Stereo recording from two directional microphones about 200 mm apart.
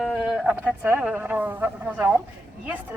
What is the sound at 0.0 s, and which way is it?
A woman's voice, centre (ahead or behind).